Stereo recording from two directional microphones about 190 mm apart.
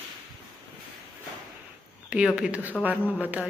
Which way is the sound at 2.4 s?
5° right (ahead or behind).